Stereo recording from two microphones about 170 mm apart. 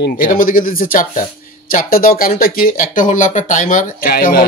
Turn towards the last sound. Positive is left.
turn(degrees=60)  # may be behind; listen again after turning